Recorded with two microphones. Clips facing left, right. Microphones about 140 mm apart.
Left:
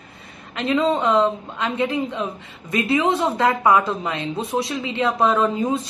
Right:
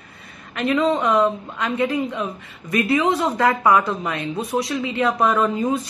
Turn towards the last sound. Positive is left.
turn(degrees=25)  # may be behind; listen again after turning